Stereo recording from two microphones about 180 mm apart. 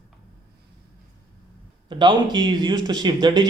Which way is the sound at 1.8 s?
25° right (ahead or behind).